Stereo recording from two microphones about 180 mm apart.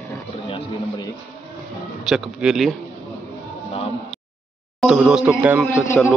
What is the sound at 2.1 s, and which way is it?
Speech, 5° right (ahead or behind).